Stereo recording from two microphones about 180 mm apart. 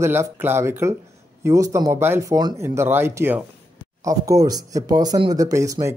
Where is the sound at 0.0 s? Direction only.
15° right (ahead or behind).